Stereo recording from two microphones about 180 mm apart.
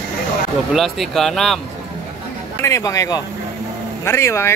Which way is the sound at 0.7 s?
Centre (ahead or behind).